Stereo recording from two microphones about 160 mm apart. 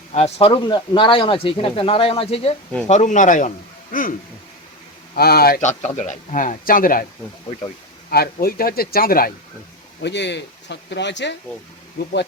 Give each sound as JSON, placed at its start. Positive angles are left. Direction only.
{"t": 0.1, "sound": "speech", "side_deg": 40}
{"t": 5.1, "sound": "speech", "side_deg": 75}
{"t": 5.5, "sound": "speech", "side_deg": 50}
{"t": 8.1, "sound": "speech", "side_deg": 70}
{"t": 10.0, "sound": "speech", "side_deg": 90}